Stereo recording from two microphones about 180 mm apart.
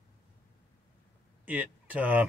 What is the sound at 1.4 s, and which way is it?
Speech, 10° right (ahead or behind).